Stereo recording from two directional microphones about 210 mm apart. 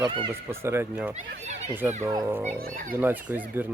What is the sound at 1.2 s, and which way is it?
Speech, 30° right (ahead or behind).